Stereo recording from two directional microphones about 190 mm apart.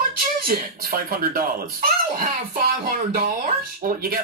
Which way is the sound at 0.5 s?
50° right (ahead or behind).